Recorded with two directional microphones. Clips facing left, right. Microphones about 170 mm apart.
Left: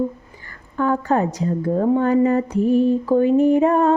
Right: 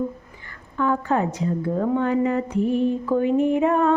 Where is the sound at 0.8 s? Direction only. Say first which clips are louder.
Left 3 dB; 40° left (ahead or behind).